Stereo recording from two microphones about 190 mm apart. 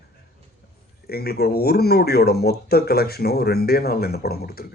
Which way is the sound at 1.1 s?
55° left (ahead or behind).